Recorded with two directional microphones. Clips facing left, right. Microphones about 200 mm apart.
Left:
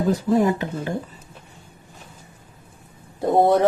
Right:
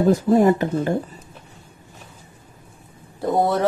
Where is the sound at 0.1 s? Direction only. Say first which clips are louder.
Right 2 dB; 45° right (ahead or behind).